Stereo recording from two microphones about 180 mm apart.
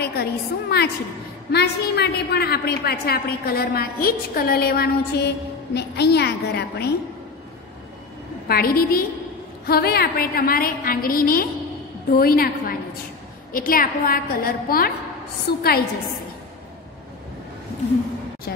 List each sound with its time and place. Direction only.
0.0 s a woman's voice: 60° left (ahead or behind)
8.5 s a woman's voice: 60° left (ahead or behind)